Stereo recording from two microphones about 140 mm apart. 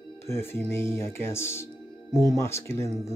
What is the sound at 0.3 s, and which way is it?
Speech, 15° left (ahead or behind).